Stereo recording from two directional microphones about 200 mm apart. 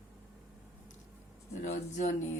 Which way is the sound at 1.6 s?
35° left (ahead or behind).